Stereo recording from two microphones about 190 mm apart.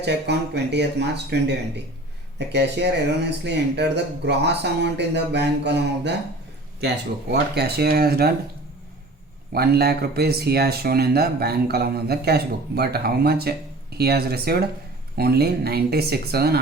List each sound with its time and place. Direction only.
0.0 s speech: 60° right (ahead or behind)
9.5 s speech: 55° right (ahead or behind)